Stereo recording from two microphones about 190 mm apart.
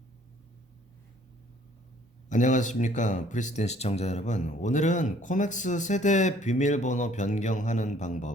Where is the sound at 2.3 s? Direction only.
40° left (ahead or behind).